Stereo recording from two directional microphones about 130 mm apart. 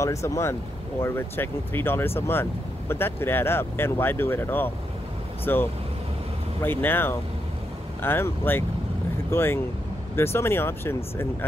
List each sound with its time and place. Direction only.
0.0 s speech: 25° left (ahead or behind)